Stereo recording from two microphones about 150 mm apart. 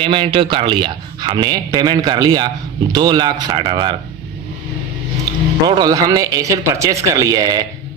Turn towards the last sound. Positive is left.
turn(degrees=-25)  # may be behind; listen again after turning